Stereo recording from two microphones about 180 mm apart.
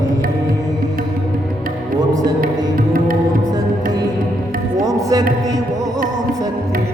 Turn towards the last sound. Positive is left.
turn(degrees=-20)  # may be behind; listen again after turning